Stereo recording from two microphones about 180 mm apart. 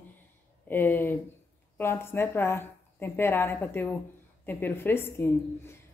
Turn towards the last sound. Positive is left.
turn(degrees=15)  # may be behind; listen again after turning